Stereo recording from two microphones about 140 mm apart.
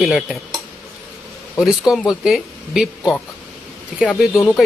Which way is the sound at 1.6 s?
5° right (ahead or behind).